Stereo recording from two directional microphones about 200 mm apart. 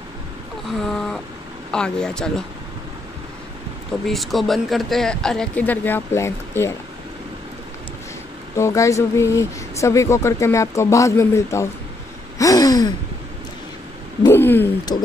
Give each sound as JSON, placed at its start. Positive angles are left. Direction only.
{"t": 0.7, "sound": "a sound", "side_deg": 0}
{"t": 1.7, "sound": "speech", "side_deg": 5}
{"t": 4.1, "sound": "speech", "side_deg": 0}
{"t": 8.5, "sound": "speech", "side_deg": 15}
{"t": 12.4, "sound": "gasp", "side_deg": 15}
{"t": 14.2, "sound": "a sound", "side_deg": 10}
{"t": 14.9, "sound": "a man's voice", "side_deg": 20}